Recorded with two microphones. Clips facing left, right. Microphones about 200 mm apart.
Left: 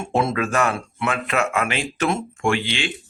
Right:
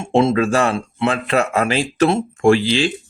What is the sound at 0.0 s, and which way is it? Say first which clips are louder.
Speech: right 6 dB; 25° right (ahead or behind).